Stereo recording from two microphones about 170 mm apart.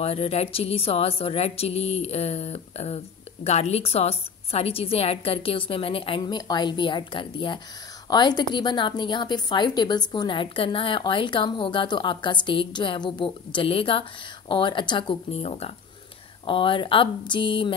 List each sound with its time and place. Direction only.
0.0 s a woman's voice: 35° left (ahead or behind)